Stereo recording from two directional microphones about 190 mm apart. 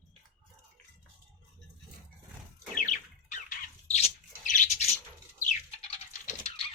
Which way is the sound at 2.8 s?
40° left (ahead or behind).